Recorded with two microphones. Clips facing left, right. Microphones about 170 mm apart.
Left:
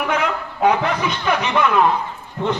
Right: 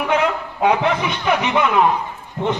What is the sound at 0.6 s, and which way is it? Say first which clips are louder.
A man's voice: even; 20° right (ahead or behind).